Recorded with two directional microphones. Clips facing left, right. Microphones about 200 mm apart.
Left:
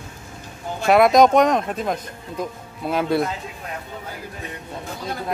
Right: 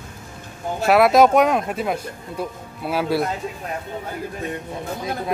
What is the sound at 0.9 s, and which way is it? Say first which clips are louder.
Speech: even; 5° right (ahead or behind).